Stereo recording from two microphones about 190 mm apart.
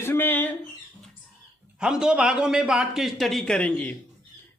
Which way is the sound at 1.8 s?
5° right (ahead or behind).